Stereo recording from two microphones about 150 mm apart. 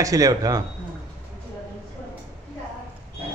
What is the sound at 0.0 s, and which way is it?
Speech, 25° right (ahead or behind).